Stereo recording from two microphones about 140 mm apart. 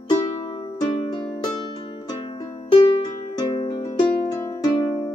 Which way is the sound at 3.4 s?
30° left (ahead or behind).